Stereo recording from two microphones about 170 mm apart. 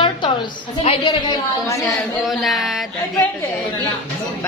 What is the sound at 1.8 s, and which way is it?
Speech, centre (ahead or behind).